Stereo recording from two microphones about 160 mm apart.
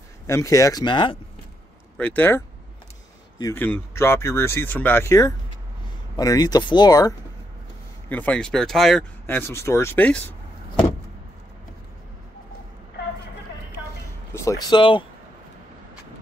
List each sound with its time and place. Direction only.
0.3 s speech: 20° left (ahead or behind)
2.0 s speech: 10° left (ahead or behind)
3.5 s speech: 10° left (ahead or behind)
8.1 s speech: 10° left (ahead or behind)
9.2 s speech: 15° left (ahead or behind)
14.3 s speech: 20° left (ahead or behind)